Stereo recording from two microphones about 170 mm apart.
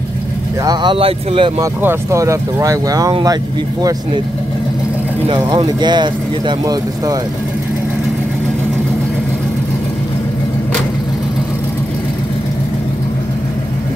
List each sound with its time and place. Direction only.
0.7 s speech: 30° right (ahead or behind)
1.6 s speech: 15° right (ahead or behind)
5.3 s speech: 25° right (ahead or behind)